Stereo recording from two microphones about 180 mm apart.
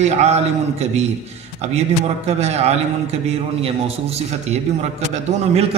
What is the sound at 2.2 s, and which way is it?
A man's voice, 35° right (ahead or behind).